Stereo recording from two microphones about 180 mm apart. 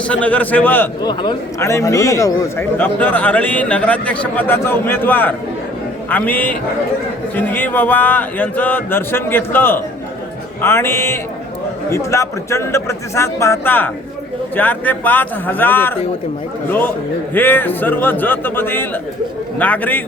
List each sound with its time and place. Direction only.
0.1 s a man's voice: 10° left (ahead or behind)
1.0 s a man's voice: 25° left (ahead or behind); by 20.0 s 10° left (ahead or behind)